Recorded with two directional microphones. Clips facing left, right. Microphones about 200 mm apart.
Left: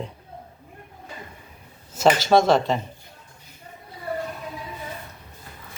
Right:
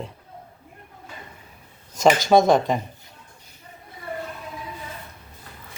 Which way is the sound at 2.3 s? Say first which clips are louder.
Right 2 dB; 15° right (ahead or behind).